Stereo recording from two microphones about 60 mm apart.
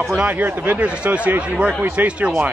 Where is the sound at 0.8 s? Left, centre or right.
Right.